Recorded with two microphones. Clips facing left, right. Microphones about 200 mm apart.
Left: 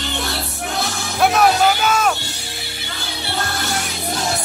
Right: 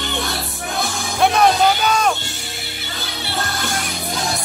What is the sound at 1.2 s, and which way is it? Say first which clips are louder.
Music: even; 5° left (ahead or behind).